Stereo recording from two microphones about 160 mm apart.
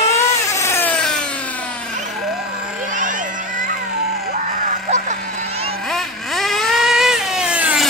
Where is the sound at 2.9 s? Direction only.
55° right (ahead or behind).